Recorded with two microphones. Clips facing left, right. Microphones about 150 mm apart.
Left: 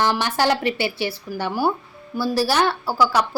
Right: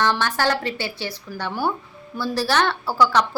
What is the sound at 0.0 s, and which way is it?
A woman's voice, 10° left (ahead or behind).